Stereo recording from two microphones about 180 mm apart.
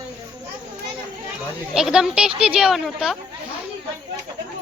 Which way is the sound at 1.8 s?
5° right (ahead or behind).